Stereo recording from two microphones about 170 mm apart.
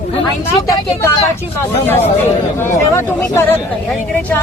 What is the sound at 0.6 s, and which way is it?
Speech, 20° left (ahead or behind).